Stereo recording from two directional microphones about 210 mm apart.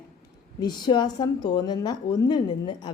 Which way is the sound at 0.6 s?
20° left (ahead or behind).